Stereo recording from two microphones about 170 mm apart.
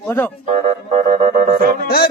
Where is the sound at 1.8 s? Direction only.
65° left (ahead or behind).